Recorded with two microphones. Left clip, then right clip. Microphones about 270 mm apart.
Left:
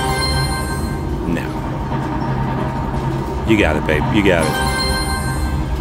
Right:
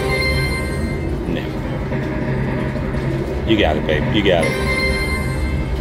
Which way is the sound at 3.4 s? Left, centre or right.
Left.